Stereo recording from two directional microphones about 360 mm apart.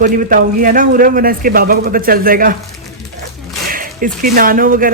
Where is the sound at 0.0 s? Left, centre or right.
Right.